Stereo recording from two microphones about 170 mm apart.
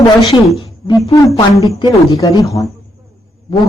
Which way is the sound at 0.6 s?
25° left (ahead or behind).